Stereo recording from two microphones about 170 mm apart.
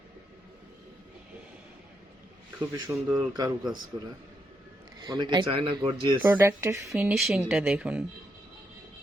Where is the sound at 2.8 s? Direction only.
20° right (ahead or behind).